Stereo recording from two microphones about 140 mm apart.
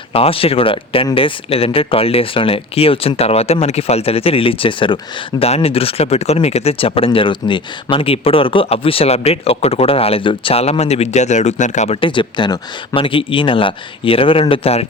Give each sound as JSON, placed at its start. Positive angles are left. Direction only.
{"t": 0.1, "sound": "speech", "side_deg": 40}
{"t": 11.9, "sound": "speech", "side_deg": 35}